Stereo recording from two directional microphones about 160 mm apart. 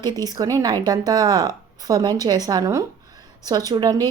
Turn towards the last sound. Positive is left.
turn(degrees=-25)  # may be behind; listen again after turning